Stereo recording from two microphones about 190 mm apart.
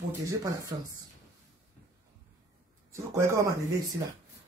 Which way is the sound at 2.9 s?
15° right (ahead or behind).